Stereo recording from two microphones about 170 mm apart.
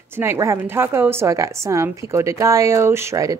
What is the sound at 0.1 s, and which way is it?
A woman's voice, 15° right (ahead or behind).